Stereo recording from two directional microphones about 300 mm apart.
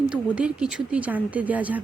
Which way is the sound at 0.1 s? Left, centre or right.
Centre.